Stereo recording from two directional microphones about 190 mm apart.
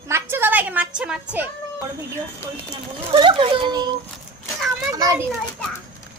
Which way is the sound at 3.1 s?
25° right (ahead or behind).